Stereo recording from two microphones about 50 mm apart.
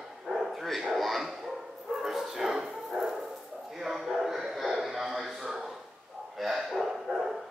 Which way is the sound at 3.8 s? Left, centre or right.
Centre.